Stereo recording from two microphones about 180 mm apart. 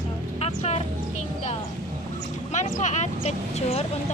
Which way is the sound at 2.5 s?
40° left (ahead or behind).